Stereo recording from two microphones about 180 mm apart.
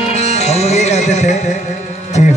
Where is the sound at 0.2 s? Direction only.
40° left (ahead or behind).